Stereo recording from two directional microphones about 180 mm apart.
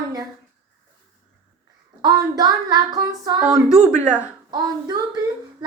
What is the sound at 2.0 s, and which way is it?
Child singing, 20° right (ahead or behind).